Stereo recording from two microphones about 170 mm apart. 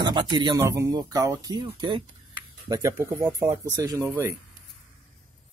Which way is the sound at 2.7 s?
15° right (ahead or behind).